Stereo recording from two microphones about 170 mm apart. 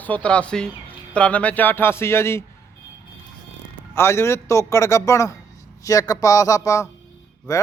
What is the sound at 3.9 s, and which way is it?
Speech, 15° left (ahead or behind).